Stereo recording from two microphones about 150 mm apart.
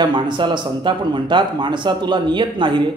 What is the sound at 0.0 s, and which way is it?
A man's voice, 30° right (ahead or behind).